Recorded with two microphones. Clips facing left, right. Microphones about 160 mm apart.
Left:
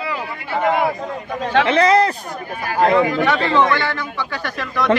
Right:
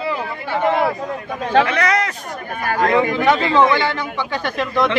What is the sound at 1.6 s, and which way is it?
Speech, 30° left (ahead or behind).